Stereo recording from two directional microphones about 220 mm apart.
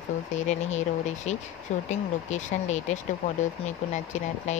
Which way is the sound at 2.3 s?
30° left (ahead or behind).